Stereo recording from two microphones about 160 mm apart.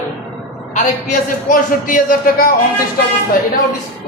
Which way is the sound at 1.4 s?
55° left (ahead or behind).